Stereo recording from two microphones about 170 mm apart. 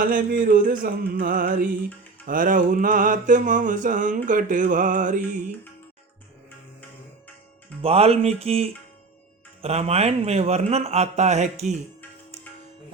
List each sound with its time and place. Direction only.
0.0 s music: 55° right (ahead or behind)
7.8 s a man's voice: 35° right (ahead or behind)